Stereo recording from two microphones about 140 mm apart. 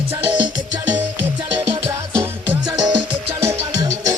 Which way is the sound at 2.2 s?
15° right (ahead or behind).